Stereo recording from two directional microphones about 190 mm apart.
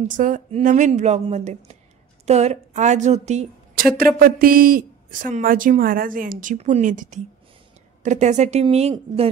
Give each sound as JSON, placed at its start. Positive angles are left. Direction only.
{"t": 0.0, "sound": "speech", "side_deg": -40}
{"t": 3.8, "sound": "a woman's voice", "side_deg": -50}